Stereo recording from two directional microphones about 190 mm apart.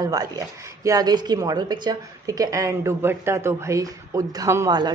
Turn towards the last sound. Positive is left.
turn(degrees=-20)  # may be behind; listen again after turning